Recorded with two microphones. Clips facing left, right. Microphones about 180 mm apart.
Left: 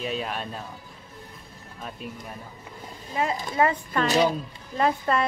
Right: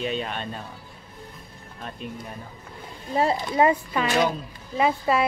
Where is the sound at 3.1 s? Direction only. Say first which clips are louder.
Right 4 dB; 35° right (ahead or behind).